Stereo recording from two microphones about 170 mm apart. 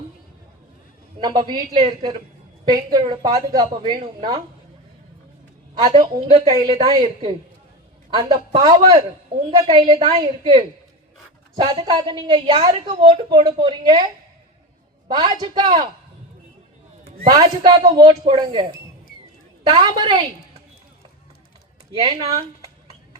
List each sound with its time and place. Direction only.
1.2 s a woman's voice: 25° right (ahead or behind)
6.1 s a woman's voice: 35° right (ahead or behind)
6.4 s a woman's voice: 25° right (ahead or behind)
15.1 s a woman's voice: 25° right (ahead or behind)
17.2 s a woman's voice: 25° right (ahead or behind)
19.6 s a woman's voice: 30° right (ahead or behind)
21.9 s a woman's voice: 25° right (ahead or behind)